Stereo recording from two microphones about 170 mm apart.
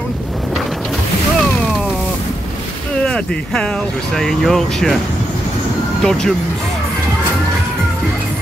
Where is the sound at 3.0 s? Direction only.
5° left (ahead or behind).